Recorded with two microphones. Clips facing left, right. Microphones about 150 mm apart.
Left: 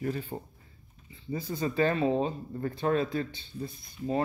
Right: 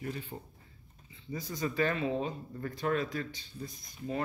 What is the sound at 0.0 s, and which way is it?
Speech, 40° left (ahead or behind).